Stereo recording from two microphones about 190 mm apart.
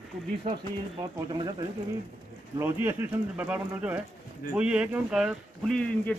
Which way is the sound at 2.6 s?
10° right (ahead or behind).